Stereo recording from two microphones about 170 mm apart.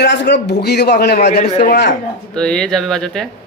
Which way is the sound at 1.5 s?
50° left (ahead or behind).